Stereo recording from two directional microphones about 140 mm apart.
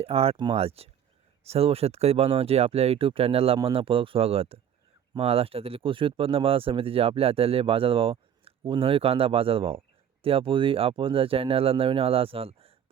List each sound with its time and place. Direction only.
0.0 s speech: 45° right (ahead or behind)